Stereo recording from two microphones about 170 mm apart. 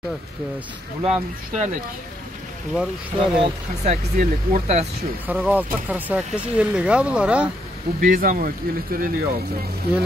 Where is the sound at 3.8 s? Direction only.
45° right (ahead or behind).